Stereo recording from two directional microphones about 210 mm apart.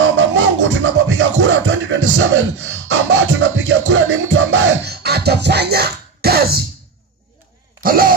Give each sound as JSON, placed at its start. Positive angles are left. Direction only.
{"t": 0.0, "sound": "music", "side_deg": -65}
{"t": 4.8, "sound": "music", "side_deg": -50}
{"t": 7.8, "sound": "a sound", "side_deg": -45}